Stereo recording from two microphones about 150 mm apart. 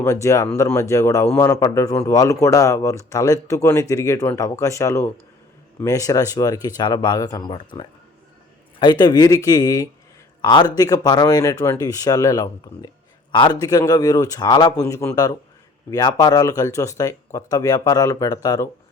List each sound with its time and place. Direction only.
0.0 s speech: 20° left (ahead or behind)